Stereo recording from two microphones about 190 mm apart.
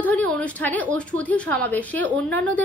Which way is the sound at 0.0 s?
5° left (ahead or behind).